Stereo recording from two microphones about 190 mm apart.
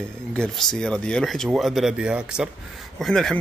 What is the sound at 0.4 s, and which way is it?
A man's voice, 5° left (ahead or behind).